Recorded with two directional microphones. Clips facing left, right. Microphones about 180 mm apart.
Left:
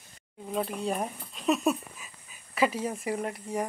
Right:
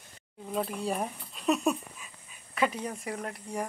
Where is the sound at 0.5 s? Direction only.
Centre (ahead or behind).